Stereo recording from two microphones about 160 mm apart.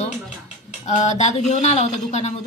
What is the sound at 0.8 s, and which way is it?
A woman's voice, 45° left (ahead or behind).